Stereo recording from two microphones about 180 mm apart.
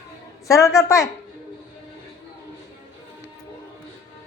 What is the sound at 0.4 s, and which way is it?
Speech, 15° left (ahead or behind).